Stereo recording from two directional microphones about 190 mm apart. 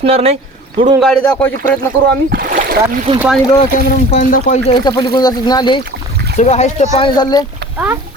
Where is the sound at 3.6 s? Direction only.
40° left (ahead or behind).